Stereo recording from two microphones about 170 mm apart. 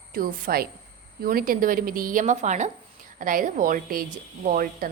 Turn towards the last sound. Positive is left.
turn(degrees=-55)  # may be behind; listen again after turning